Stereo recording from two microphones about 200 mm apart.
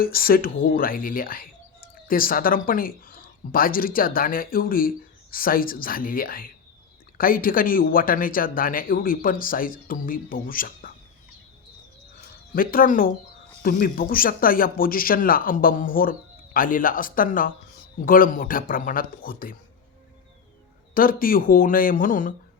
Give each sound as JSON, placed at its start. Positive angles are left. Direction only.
{"t": 0.0, "sound": "speech", "side_deg": 45}
{"t": 12.5, "sound": "speech", "side_deg": 45}
{"t": 20.9, "sound": "speech", "side_deg": 45}